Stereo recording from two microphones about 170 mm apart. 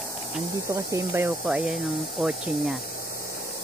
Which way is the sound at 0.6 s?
15° right (ahead or behind).